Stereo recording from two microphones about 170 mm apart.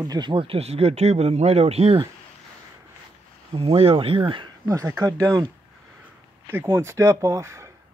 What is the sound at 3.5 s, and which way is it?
Speech, 35° right (ahead or behind).